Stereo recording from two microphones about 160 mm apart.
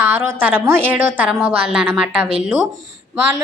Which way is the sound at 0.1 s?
15° right (ahead or behind).